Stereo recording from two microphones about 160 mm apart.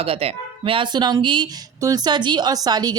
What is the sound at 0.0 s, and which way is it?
Speech, 40° right (ahead or behind).